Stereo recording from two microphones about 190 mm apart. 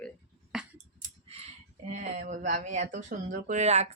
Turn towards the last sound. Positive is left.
turn(degrees=-35)  # may be behind; listen again after turning